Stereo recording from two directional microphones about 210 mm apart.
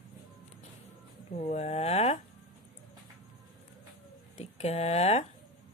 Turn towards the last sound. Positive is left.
turn(degrees=30)  # may be behind; listen again after turning